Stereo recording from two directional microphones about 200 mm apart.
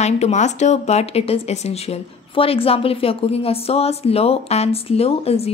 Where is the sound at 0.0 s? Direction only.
35° left (ahead or behind).